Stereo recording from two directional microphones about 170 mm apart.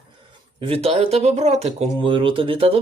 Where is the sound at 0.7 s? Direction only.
35° right (ahead or behind).